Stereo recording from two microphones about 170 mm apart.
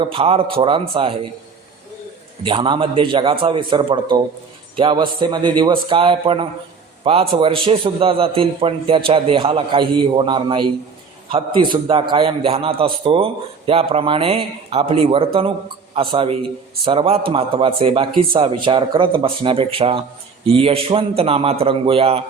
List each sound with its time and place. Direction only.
0.0 s a man's voice: 30° right (ahead or behind)
2.4 s a man's voice: 30° right (ahead or behind)